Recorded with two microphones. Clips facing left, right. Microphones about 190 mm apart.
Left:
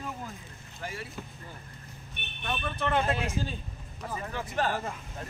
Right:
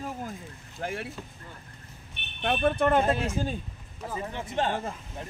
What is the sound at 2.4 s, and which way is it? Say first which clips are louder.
Speech: right 8 dB; 55° right (ahead or behind).